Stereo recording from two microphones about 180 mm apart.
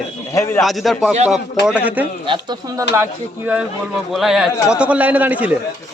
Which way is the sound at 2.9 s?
10° right (ahead or behind).